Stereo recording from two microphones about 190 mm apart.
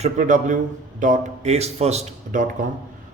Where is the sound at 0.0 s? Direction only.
40° right (ahead or behind).